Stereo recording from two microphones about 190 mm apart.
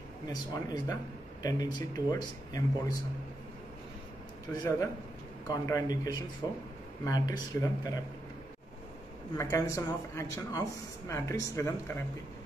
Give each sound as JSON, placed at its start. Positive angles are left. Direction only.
{"t": 0.3, "sound": "speech", "side_deg": 20}
{"t": 4.5, "sound": "speech", "side_deg": 10}
{"t": 9.4, "sound": "speech", "side_deg": 15}